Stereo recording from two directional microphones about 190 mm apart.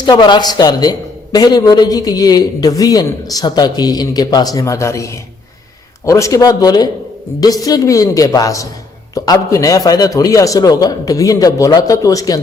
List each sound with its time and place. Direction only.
0.0 s a man's voice: 25° left (ahead or behind)